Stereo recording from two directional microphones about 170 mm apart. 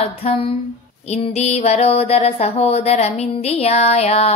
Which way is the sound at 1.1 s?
40° left (ahead or behind).